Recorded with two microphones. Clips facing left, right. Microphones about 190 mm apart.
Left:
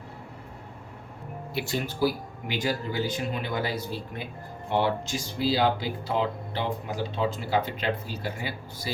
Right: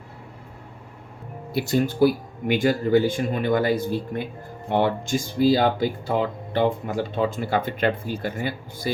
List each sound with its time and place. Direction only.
1.5 s speech: 45° right (ahead or behind)